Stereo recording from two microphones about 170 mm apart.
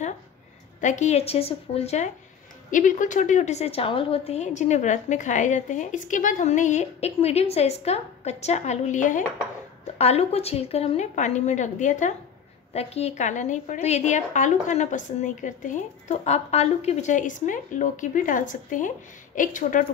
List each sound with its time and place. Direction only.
0.7 s a woman's voice: 45° left (ahead or behind)
2.7 s a woman's voice: 50° left (ahead or behind)